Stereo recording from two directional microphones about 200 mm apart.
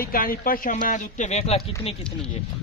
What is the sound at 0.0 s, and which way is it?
Speech, 45° left (ahead or behind).